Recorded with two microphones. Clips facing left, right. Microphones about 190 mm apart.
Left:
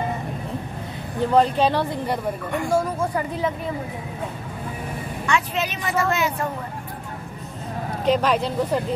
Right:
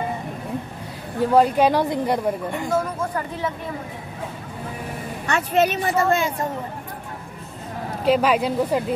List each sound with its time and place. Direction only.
1.3 s a woman's voice: 10° right (ahead or behind)
2.7 s speech: 10° left (ahead or behind)
5.2 s speech: 40° right (ahead or behind)
8.0 s a woman's voice: 5° right (ahead or behind)